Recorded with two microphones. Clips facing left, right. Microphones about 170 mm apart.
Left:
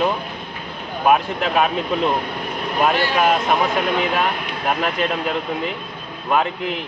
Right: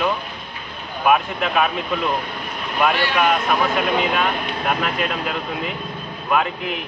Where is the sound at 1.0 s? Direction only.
35° left (ahead or behind).